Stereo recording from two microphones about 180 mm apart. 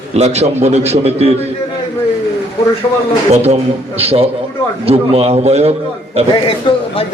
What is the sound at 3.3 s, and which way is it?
A man's voice, 35° right (ahead or behind).